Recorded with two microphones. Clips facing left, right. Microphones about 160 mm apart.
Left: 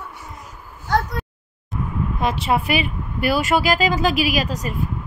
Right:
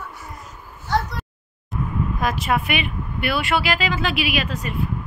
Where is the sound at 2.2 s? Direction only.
30° left (ahead or behind).